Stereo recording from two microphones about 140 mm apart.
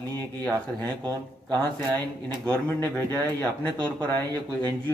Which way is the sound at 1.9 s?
15° left (ahead or behind).